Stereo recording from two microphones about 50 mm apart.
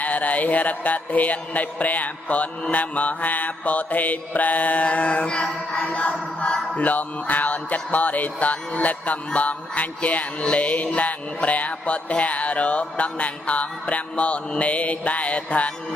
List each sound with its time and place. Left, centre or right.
0.0 s mantra: left
6.4 s music: left